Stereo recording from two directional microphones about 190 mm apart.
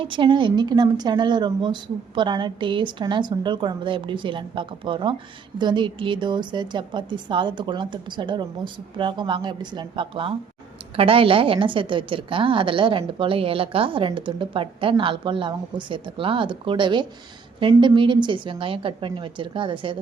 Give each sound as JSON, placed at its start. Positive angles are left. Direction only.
{"t": 0.0, "sound": "a woman's voice", "side_deg": -25}